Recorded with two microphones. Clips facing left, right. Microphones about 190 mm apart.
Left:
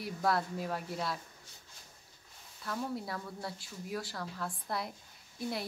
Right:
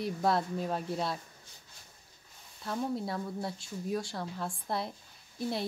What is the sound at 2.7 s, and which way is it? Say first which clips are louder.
Speech: right 4 dB; 25° right (ahead or behind).